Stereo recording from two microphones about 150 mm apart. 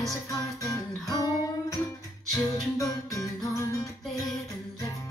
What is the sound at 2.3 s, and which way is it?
Music, 20° left (ahead or behind).